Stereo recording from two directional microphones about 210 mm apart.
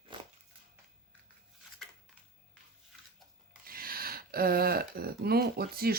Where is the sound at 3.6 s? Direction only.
45° right (ahead or behind).